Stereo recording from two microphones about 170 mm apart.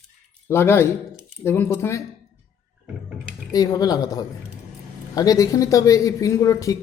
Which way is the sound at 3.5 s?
20° left (ahead or behind).